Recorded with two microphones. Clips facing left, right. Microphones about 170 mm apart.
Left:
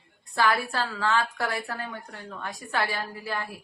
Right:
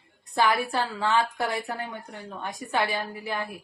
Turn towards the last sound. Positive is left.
turn(degrees=-20)  # may be behind; listen again after turning